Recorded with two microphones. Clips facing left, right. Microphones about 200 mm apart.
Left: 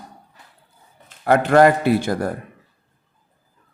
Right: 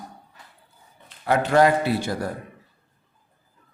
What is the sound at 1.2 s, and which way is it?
Speech, 55° left (ahead or behind).